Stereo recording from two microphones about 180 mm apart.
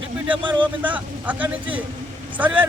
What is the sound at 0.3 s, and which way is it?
Speech, 25° right (ahead or behind).